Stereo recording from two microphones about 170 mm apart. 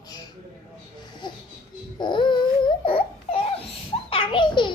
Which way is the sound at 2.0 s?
25° left (ahead or behind).